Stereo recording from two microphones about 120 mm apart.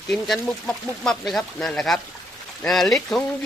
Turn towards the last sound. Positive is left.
turn(degrees=5)  # may be behind; listen again after turning